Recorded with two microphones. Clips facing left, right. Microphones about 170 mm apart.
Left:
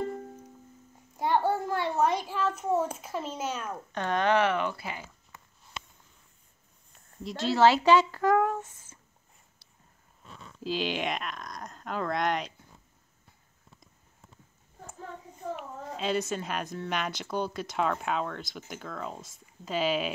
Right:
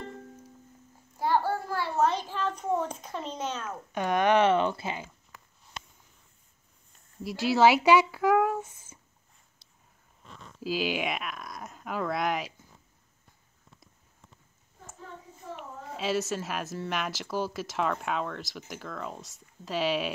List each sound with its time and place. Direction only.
1.1 s a sound: 20° left (ahead or behind)
3.9 s speech: 10° right (ahead or behind)
7.2 s speech: 10° right (ahead or behind)
10.6 s a woman's voice: 5° right (ahead or behind)
15.5 s a woman's voice: centre (ahead or behind)